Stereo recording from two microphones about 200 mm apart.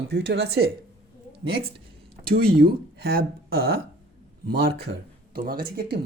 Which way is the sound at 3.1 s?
50° right (ahead or behind).